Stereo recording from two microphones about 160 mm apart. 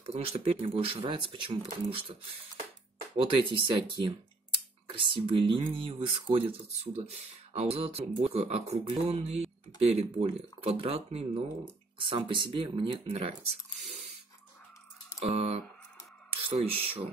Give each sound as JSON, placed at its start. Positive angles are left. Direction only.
{"t": 0.0, "sound": "speech", "side_deg": -40}
{"t": 3.2, "sound": "speech", "side_deg": -30}
{"t": 15.1, "sound": "speech", "side_deg": -40}